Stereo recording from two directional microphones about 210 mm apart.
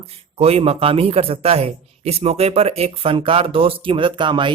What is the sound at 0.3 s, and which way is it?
Speech, 30° right (ahead or behind).